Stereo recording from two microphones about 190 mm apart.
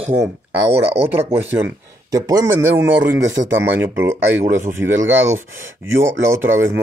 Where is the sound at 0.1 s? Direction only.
10° right (ahead or behind).